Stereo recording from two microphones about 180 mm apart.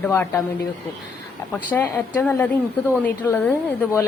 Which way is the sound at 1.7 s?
10° left (ahead or behind).